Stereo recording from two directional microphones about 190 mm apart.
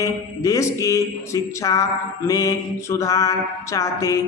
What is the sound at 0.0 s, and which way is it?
Speech, 15° left (ahead or behind).